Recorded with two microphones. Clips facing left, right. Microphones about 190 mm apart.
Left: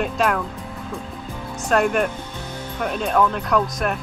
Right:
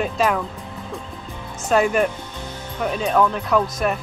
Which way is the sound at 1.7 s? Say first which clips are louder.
Right 1 dB; centre (ahead or behind).